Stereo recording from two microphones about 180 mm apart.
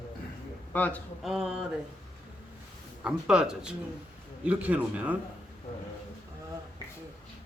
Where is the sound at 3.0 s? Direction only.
5° right (ahead or behind).